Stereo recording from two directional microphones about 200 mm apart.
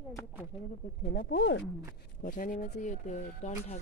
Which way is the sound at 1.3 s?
60° left (ahead or behind).